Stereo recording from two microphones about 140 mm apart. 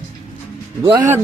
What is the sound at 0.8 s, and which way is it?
Speech, 20° right (ahead or behind).